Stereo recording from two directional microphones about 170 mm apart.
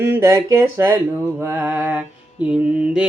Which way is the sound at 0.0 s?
15° right (ahead or behind).